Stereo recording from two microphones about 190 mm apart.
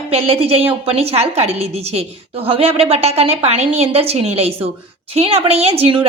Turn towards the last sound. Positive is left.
turn(degrees=-25)  # may be behind; listen again after turning